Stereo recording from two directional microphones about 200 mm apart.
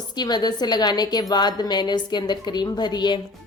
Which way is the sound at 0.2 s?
20° left (ahead or behind).